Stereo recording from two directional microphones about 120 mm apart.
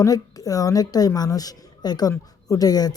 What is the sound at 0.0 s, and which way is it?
A woman's voice, 30° left (ahead or behind).